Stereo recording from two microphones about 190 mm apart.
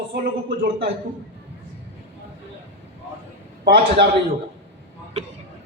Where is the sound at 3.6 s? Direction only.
60° right (ahead or behind).